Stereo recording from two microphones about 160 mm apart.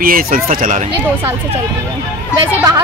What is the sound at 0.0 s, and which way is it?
Speech, 60° right (ahead or behind).